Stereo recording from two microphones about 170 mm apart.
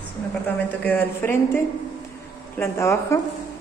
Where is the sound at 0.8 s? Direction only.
10° left (ahead or behind).